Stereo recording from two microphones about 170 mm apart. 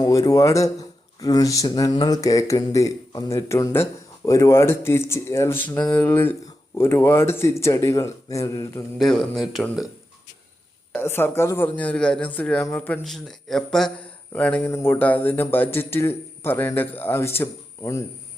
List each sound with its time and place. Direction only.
0.0 s a man's voice: 20° left (ahead or behind)
9.0 s speech: centre (ahead or behind)
10.9 s a man's voice: 15° left (ahead or behind)